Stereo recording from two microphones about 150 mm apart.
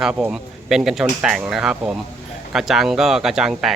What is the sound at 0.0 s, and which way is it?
Speech, 5° right (ahead or behind).